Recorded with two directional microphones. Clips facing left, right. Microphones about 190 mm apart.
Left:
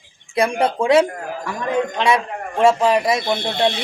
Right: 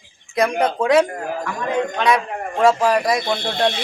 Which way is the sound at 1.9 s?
25° left (ahead or behind).